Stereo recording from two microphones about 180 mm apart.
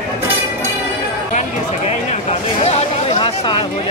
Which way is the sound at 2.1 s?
35° left (ahead or behind).